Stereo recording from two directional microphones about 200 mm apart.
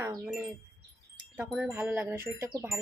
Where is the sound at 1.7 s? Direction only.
10° right (ahead or behind).